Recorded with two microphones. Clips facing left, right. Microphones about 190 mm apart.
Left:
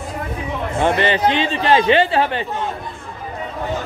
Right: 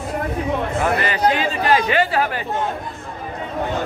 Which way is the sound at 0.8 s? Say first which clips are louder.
Left 4 dB; 25° left (ahead or behind).